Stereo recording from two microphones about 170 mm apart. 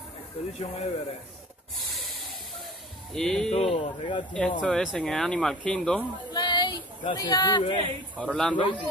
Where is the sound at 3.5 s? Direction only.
40° left (ahead or behind).